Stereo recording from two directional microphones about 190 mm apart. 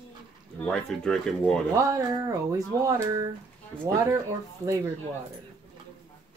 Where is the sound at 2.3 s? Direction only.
15° right (ahead or behind).